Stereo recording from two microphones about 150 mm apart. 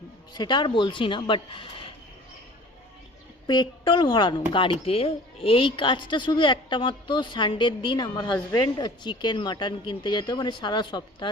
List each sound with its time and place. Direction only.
0.3 s a woman's voice: 30° left (ahead or behind)
3.4 s a woman's voice: 30° left (ahead or behind)